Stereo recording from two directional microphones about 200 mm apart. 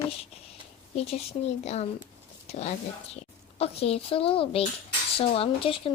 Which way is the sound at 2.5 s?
30° left (ahead or behind).